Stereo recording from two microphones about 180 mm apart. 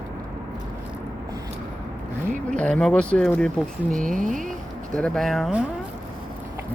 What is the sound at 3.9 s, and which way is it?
Speech, 45° right (ahead or behind).